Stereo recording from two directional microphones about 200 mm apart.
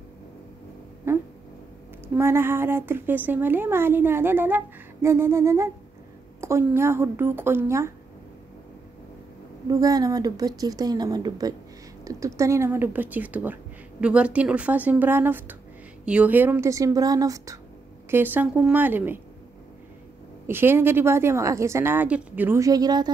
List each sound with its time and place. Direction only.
2.1 s a woman's voice: 10° right (ahead or behind)
9.7 s a woman's voice: 20° right (ahead or behind)
20.4 s a woman's voice: 10° right (ahead or behind)